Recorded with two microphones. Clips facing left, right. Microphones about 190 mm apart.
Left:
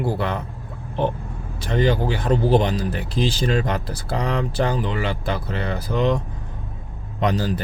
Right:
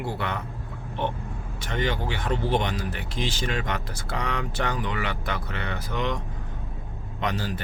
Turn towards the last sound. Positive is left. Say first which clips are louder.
# left 7 dB
turn(degrees=40)  # may be behind; listen again after turning